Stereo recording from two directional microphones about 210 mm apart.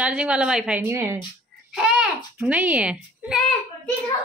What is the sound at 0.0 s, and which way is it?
A child's voice, 5° right (ahead or behind).